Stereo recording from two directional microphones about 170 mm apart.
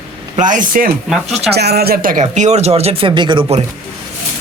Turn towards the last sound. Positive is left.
turn(degrees=-30)  # may be behind; listen again after turning